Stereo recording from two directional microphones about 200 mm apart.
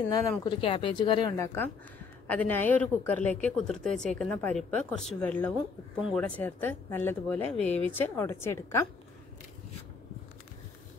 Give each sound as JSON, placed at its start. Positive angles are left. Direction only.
{"t": 0.1, "sound": "speech", "side_deg": 20}
{"t": 1.3, "sound": "a woman's voice", "side_deg": 15}